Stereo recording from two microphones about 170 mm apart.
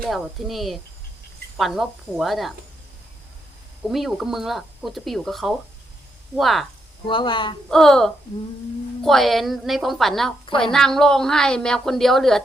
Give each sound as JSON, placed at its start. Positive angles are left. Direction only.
{"t": 0.0, "sound": "a woman's voice", "side_deg": 0}
{"t": 3.8, "sound": "a woman's voice", "side_deg": 0}
{"t": 7.1, "sound": "speech", "side_deg": 30}
{"t": 7.7, "sound": "a woman's voice", "side_deg": 0}